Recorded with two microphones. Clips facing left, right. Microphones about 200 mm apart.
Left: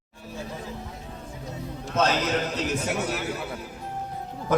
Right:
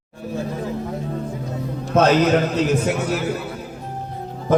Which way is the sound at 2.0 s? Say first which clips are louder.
Right 9 dB; 60° right (ahead or behind).